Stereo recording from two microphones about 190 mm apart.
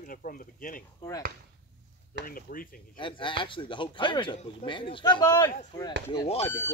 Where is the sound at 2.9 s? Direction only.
25° left (ahead or behind).